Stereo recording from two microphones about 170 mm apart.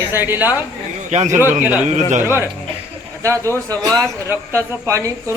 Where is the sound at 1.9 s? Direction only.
45° right (ahead or behind).